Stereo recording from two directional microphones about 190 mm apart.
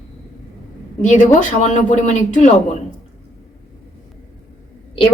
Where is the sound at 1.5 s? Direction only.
40° left (ahead or behind).